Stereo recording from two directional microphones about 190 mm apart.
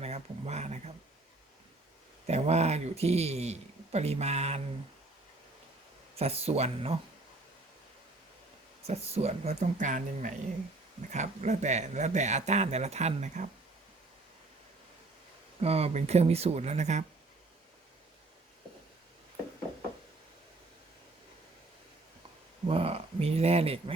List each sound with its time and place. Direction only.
0.0 s a sound: 35° right (ahead or behind)
2.2 s speech: 35° right (ahead or behind)
6.1 s speech: 30° right (ahead or behind)
8.9 s speech: 35° right (ahead or behind)
15.6 s speech: 30° right (ahead or behind)
22.6 s speech: 30° right (ahead or behind)